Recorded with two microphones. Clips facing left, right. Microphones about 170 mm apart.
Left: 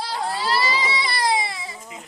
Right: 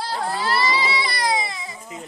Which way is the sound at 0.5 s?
20° left (ahead or behind).